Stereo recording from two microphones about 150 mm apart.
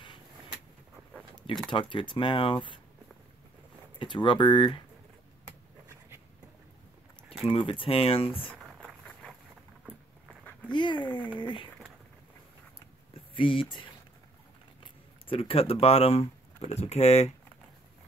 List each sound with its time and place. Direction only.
1.1 s a sound: 5° left (ahead or behind)
1.7 s speech: 35° left (ahead or behind)
4.0 s speech: 35° left (ahead or behind)
7.4 s speech: 35° left (ahead or behind)
10.7 s speech: 30° left (ahead or behind)
13.3 s speech: 35° left (ahead or behind)